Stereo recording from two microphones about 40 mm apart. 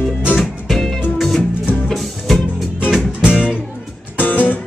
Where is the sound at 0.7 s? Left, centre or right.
Centre.